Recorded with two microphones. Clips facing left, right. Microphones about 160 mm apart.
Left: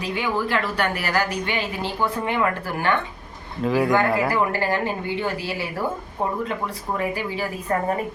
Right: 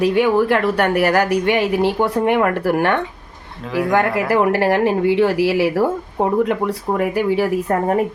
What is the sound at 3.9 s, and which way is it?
Speech, 75° right (ahead or behind).